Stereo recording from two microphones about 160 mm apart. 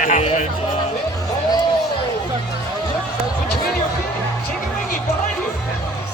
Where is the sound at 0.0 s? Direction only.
45° left (ahead or behind).